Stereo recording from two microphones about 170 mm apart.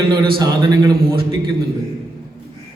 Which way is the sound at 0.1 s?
25° right (ahead or behind).